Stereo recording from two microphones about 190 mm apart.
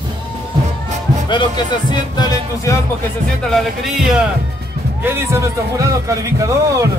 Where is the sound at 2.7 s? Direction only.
15° left (ahead or behind).